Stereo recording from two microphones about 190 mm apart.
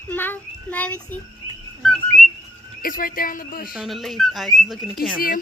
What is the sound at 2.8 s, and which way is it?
Speech, 50° left (ahead or behind).